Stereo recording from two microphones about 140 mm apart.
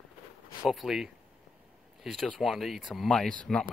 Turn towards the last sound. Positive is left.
turn(degrees=5)  # may be behind; listen again after turning